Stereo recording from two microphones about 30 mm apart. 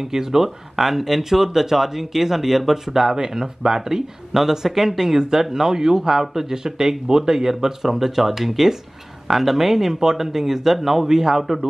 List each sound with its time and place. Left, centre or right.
0.0 s speech: centre